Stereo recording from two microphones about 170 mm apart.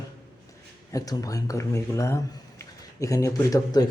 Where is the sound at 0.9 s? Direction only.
20° left (ahead or behind).